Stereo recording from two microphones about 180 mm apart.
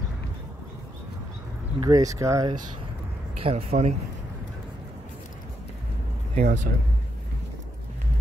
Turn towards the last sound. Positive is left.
turn(degrees=-45)  # may be behind; listen again after turning